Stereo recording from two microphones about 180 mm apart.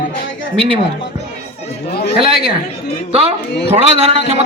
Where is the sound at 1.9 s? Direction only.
60° left (ahead or behind).